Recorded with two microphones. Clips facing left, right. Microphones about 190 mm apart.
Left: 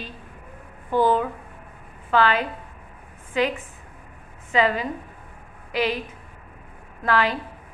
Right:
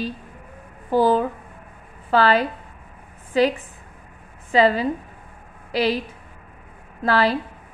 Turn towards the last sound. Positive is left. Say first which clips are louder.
# right 3 dB
turn(degrees=-35)  # may be behind; listen again after turning